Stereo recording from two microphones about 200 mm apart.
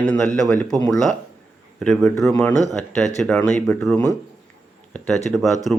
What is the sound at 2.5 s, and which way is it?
Speech, 15° right (ahead or behind).